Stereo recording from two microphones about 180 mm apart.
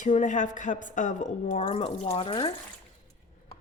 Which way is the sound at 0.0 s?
45° left (ahead or behind).